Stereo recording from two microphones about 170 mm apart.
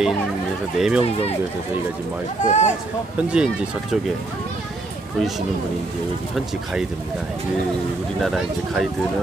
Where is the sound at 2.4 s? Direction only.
45° left (ahead or behind).